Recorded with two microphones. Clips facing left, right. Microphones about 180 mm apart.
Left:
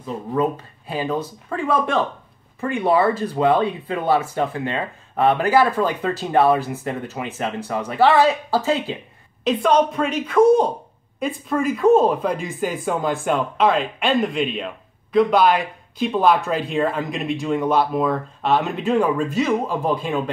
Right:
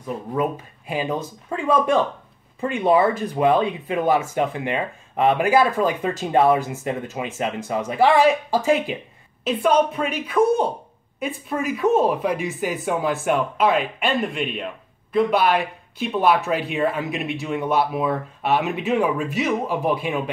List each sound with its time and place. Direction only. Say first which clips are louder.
0.0 s speech: left 2 dB; 15° right (ahead or behind)